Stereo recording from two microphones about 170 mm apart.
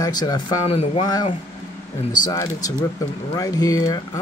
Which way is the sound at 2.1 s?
25° left (ahead or behind).